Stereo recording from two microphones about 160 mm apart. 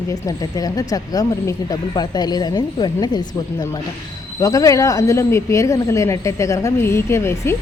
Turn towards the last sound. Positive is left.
turn(degrees=15)  # may be behind; listen again after turning